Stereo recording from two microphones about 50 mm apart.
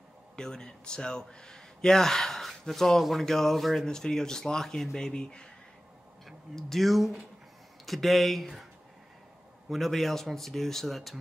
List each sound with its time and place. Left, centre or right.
0.4 s speech: centre
6.2 s speech: centre
9.7 s speech: centre